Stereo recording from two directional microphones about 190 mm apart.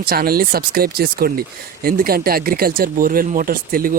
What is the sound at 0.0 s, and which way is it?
Speech, 50° right (ahead or behind).